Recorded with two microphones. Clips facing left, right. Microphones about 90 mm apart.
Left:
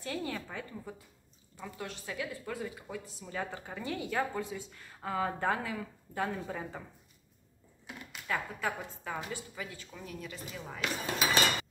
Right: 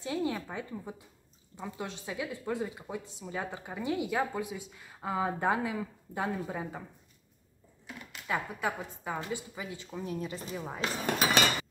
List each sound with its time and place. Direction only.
0.0 s a woman's voice: 20° right (ahead or behind)
8.3 s a woman's voice: 15° right (ahead or behind)